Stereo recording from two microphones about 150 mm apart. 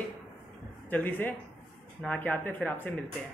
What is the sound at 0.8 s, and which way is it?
Speech, 10° left (ahead or behind).